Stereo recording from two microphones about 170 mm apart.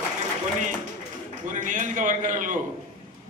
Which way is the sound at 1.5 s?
50° right (ahead or behind).